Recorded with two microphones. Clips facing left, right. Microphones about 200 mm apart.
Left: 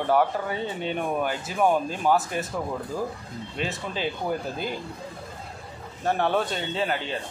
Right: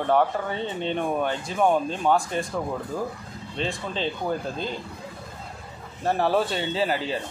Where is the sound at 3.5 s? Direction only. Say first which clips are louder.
Right 2 dB; 5° left (ahead or behind).